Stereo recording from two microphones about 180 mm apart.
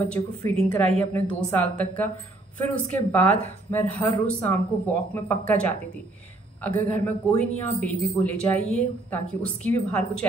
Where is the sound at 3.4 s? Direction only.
10° left (ahead or behind).